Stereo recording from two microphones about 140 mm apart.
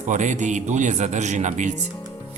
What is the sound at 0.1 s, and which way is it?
Speech, 60° right (ahead or behind).